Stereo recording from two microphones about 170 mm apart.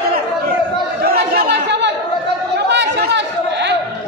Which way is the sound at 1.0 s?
65° right (ahead or behind).